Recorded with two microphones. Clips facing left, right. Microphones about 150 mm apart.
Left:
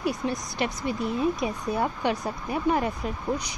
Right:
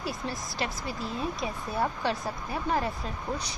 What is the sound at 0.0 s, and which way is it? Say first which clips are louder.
Speech: left 6 dB; 20° left (ahead or behind).